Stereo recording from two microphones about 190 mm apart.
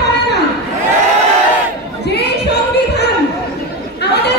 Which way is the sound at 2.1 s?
60° left (ahead or behind).